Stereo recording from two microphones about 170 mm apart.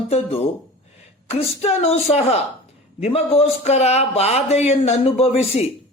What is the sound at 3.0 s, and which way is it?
Speech, 40° left (ahead or behind).